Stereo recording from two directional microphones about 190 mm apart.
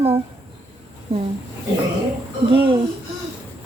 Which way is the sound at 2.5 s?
25° right (ahead or behind).